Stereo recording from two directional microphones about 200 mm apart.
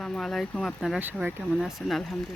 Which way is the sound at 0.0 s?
Centre (ahead or behind).